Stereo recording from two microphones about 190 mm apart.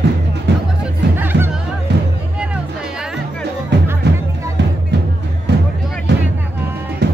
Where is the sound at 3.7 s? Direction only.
65° right (ahead or behind).